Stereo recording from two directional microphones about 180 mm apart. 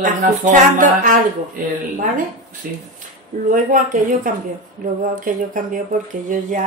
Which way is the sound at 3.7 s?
50° right (ahead or behind).